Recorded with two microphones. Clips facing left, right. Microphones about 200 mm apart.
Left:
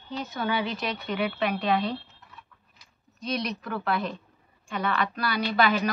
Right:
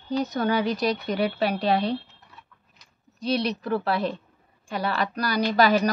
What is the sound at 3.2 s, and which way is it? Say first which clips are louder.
A woman's voice: right 5 dB; 30° right (ahead or behind).